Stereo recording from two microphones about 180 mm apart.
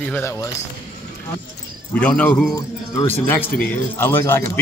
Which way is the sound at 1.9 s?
5° left (ahead or behind).